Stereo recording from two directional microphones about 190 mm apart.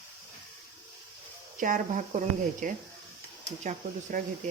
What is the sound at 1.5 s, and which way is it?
Speech, 45° right (ahead or behind).